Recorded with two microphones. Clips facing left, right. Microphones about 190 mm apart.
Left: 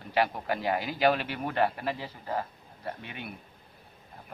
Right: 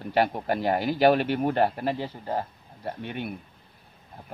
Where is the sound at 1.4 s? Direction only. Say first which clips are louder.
Right 5 dB; 35° right (ahead or behind).